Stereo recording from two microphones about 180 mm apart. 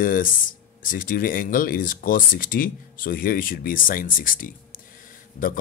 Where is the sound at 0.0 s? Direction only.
50° left (ahead or behind).